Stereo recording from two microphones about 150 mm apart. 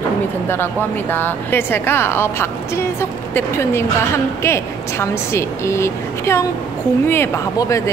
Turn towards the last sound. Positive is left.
turn(degrees=20)  # may be behind; listen again after turning